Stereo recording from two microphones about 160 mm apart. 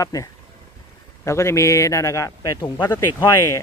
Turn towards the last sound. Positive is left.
turn(degrees=20)  # may be behind; listen again after turning